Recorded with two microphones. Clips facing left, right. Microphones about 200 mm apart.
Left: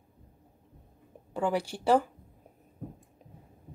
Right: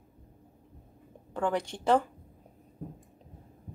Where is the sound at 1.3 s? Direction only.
10° left (ahead or behind).